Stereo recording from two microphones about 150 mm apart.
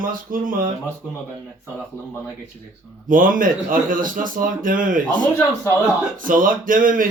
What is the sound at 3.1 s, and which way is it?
Speech, 65° right (ahead or behind).